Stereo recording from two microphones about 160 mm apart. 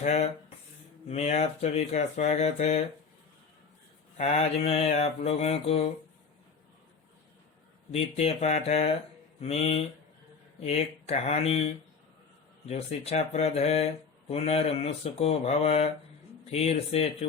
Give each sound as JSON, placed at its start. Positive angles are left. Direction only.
{"t": 0.0, "sound": "speech", "side_deg": 45}
{"t": 4.2, "sound": "speech", "side_deg": 40}
{"t": 7.9, "sound": "speech", "side_deg": 40}